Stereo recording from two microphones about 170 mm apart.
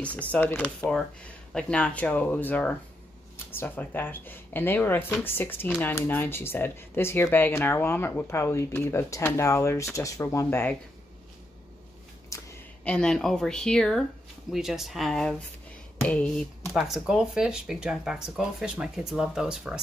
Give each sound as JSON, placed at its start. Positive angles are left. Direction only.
{"t": 0.0, "sound": "speech", "side_deg": 10}
{"t": 12.3, "sound": "a sound", "side_deg": 20}
{"t": 12.8, "sound": "speech", "side_deg": 5}